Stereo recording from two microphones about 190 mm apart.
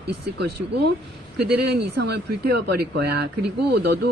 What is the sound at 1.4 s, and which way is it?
Speech, 55° right (ahead or behind).